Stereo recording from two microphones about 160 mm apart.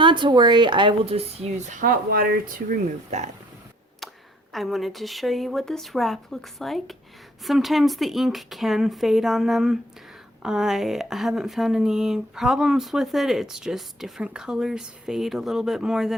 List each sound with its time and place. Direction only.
0.0 s speech: 30° right (ahead or behind); by 3.2 s 50° right (ahead or behind)
4.5 s speech: centre (ahead or behind)